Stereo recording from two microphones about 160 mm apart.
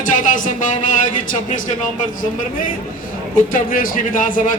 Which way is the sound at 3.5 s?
60° left (ahead or behind).